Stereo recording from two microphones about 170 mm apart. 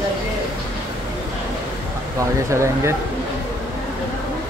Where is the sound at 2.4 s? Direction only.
15° right (ahead or behind).